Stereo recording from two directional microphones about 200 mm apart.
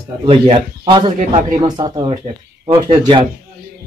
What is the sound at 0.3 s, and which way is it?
Speech, 25° right (ahead or behind).